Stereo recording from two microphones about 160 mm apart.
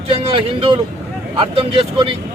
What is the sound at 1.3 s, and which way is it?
Speech, 30° right (ahead or behind).